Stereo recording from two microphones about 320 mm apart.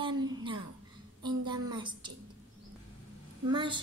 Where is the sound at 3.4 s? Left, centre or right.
Centre.